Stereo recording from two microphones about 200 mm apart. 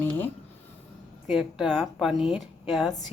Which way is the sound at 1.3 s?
Centre (ahead or behind).